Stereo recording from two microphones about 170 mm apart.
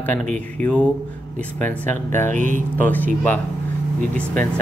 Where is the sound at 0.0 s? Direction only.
10° left (ahead or behind).